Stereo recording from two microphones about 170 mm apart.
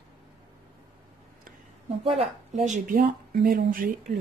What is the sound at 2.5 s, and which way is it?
Speech, 45° right (ahead or behind).